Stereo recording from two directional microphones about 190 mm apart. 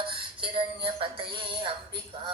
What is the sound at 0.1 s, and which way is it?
Music, 25° right (ahead or behind).